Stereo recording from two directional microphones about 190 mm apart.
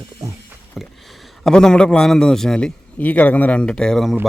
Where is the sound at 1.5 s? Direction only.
5° left (ahead or behind).